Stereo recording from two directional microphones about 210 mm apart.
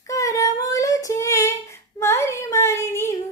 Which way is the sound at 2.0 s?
15° left (ahead or behind).